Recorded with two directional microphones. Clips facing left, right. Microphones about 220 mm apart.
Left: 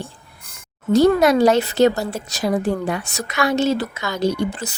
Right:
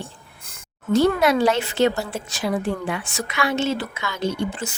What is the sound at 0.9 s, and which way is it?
A woman's voice, 40° left (ahead or behind).